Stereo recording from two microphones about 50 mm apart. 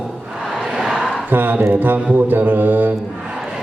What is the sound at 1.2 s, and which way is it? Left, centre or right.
Mantra, right.